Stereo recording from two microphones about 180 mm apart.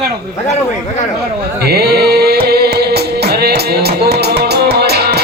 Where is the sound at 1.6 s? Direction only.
60° right (ahead or behind).